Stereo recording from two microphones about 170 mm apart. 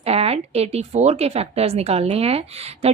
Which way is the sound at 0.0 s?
35° right (ahead or behind).